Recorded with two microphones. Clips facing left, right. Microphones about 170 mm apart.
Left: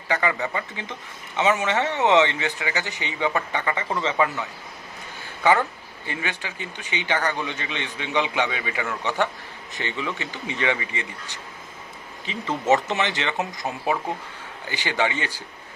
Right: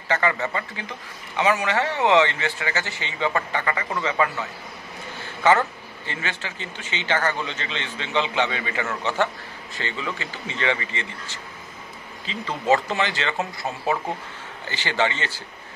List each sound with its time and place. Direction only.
0.1 s a man's voice: 15° left (ahead or behind)
5.4 s a man's voice: 15° left (ahead or behind)